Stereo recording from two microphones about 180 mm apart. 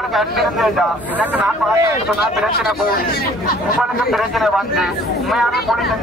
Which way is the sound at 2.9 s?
55° left (ahead or behind).